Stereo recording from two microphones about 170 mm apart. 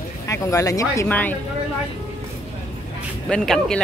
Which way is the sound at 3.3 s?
5° left (ahead or behind).